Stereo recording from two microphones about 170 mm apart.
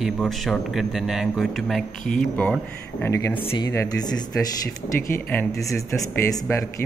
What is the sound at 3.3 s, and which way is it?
Speech, 30° left (ahead or behind).